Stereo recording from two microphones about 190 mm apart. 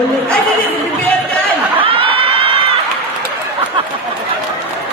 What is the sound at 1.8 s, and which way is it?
Crowd, 30° right (ahead or behind).